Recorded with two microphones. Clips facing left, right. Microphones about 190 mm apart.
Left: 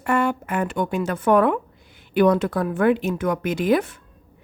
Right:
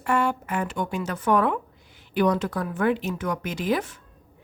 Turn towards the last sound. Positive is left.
turn(degrees=55)  # may be behind; listen again after turning